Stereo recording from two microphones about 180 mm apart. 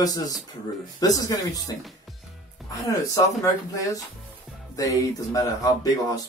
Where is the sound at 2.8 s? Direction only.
20° left (ahead or behind).